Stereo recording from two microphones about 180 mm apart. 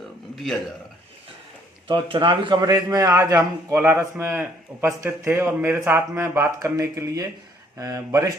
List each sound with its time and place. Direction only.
2.1 s a man's voice: 25° right (ahead or behind)